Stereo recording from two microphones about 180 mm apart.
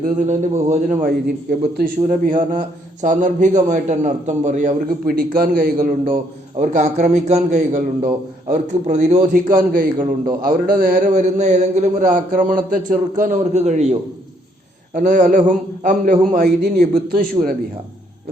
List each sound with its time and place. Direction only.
0.2 s a man's voice: 40° right (ahead or behind)
2.0 s a man's voice: 40° right (ahead or behind)
2.3 s mantra: 25° right (ahead or behind)
3.0 s a man's voice: 45° right (ahead or behind)
6.6 s a man's voice: 40° right (ahead or behind)